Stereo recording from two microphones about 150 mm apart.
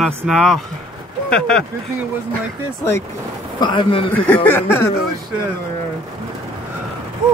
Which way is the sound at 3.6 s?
30° left (ahead or behind).